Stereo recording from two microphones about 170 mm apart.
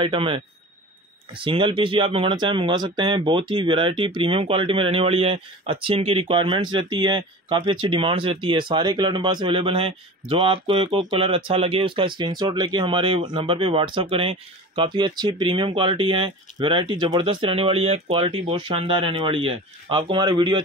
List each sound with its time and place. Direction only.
0.0 s speech: 30° right (ahead or behind)